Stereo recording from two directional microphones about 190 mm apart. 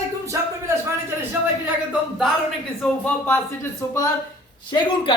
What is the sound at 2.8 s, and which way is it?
Speech, 10° left (ahead or behind).